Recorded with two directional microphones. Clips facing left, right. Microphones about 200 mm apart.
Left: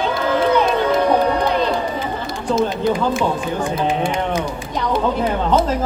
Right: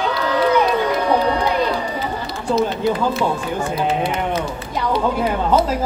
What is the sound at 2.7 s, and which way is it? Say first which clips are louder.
Speech: left 1 dB; 10° left (ahead or behind).